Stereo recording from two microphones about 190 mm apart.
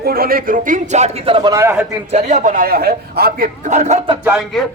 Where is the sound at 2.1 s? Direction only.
40° right (ahead or behind); by 3.5 s 55° right (ahead or behind).